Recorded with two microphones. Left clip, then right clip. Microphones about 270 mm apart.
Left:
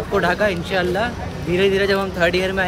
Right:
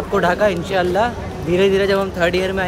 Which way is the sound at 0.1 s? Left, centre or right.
Centre.